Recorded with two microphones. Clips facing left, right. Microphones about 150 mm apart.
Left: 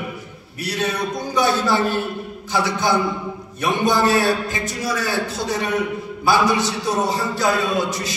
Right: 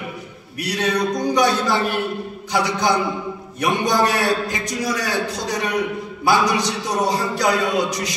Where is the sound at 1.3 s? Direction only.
20° right (ahead or behind).